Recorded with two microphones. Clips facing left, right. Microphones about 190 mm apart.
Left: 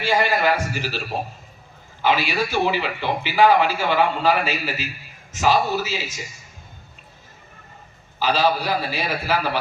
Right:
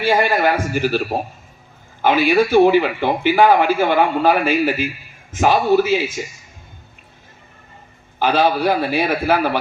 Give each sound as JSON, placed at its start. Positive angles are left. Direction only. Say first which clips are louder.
{"t": 0.0, "sound": "a man's voice", "louder": "right 4 dB", "side_deg": -50}
{"t": 8.2, "sound": "a man's voice", "louder": "right 4 dB", "side_deg": -55}